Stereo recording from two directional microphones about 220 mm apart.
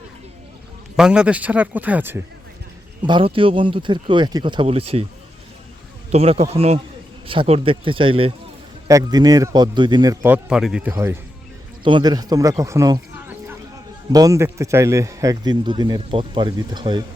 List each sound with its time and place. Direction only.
0.9 s a man's voice: 5° right (ahead or behind)
3.1 s speech: 25° right (ahead or behind)
6.1 s a man's voice: 25° right (ahead or behind); by 11.2 s 10° right (ahead or behind)
11.8 s a man's voice: 20° right (ahead or behind)